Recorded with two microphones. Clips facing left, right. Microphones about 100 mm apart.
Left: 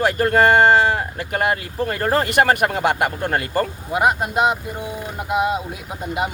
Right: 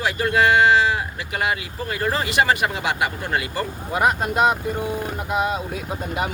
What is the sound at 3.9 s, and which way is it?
Speech, 15° left (ahead or behind).